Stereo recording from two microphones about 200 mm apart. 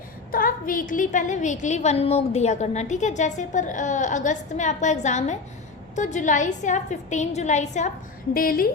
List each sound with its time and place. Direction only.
0.3 s a woman's voice: 45° left (ahead or behind)
8.3 s speech: 45° left (ahead or behind)